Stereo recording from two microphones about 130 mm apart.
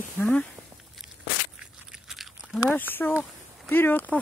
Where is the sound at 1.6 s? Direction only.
5° right (ahead or behind).